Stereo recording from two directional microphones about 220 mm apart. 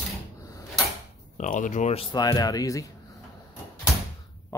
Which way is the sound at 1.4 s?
35° left (ahead or behind).